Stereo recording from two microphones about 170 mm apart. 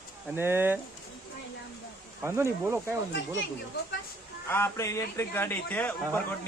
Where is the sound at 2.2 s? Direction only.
15° right (ahead or behind).